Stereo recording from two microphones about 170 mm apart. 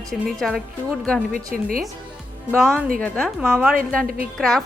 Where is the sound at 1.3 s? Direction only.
55° right (ahead or behind).